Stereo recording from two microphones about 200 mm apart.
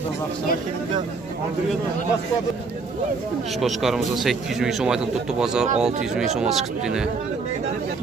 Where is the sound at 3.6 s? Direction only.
Centre (ahead or behind).